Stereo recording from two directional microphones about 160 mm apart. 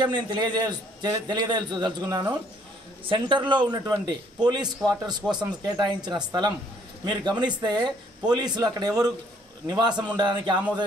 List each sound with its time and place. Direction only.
0.0 s a man's voice: 30° right (ahead or behind)